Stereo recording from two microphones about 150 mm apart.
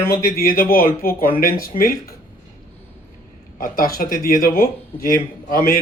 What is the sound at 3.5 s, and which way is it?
A man's voice, 65° left (ahead or behind).